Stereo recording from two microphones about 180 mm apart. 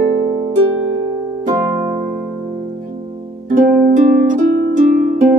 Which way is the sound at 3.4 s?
50° right (ahead or behind).